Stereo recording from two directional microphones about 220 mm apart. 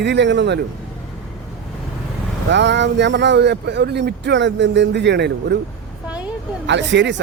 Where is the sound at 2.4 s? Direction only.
55° right (ahead or behind).